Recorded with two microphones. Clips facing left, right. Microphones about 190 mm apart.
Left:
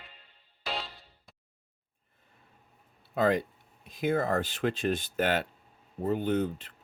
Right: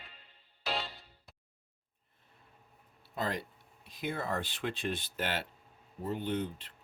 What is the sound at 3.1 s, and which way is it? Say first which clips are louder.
Speech: left 10 dB; 55° left (ahead or behind).